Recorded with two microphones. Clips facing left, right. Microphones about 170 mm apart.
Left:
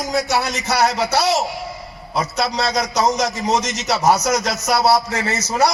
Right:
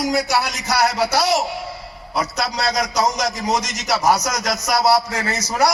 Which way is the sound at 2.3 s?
30° left (ahead or behind).